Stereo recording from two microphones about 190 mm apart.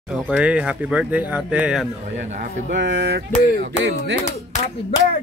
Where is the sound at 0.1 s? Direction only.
5° right (ahead or behind).